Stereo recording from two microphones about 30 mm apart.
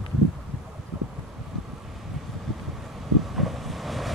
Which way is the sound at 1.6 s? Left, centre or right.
Centre.